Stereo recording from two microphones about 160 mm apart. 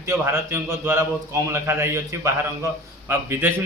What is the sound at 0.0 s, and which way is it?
A man's voice, 15° right (ahead or behind).